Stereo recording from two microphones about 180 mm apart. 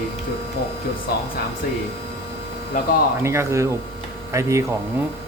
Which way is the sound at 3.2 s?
15° right (ahead or behind).